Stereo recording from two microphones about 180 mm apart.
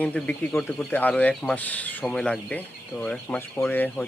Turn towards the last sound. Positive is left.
turn(degrees=10)  # may be behind; listen again after turning